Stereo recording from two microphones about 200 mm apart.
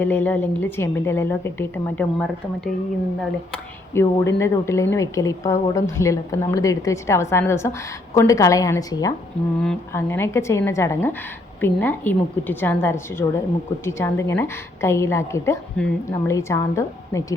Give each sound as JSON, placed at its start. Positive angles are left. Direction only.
{"t": 0.0, "sound": "a woman's voice", "side_deg": 10}
{"t": 3.5, "sound": "a woman's voice", "side_deg": 15}